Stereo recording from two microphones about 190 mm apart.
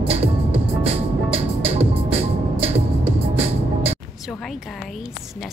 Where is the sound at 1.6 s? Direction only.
30° right (ahead or behind).